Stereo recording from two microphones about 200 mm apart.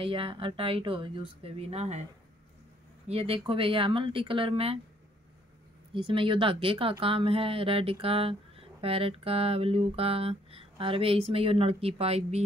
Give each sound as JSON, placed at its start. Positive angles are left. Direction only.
{"t": 0.0, "sound": "speech", "side_deg": -25}
{"t": 3.1, "sound": "speech", "side_deg": -30}
{"t": 5.9, "sound": "speech", "side_deg": -25}